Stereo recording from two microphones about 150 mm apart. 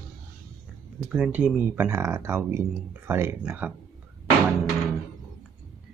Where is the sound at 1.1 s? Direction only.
5° right (ahead or behind).